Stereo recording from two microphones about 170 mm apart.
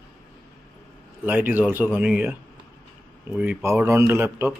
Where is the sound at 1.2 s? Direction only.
10° right (ahead or behind).